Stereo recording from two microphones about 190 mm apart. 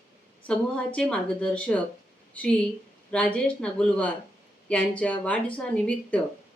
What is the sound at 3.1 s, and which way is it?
A woman's voice, 5° left (ahead or behind).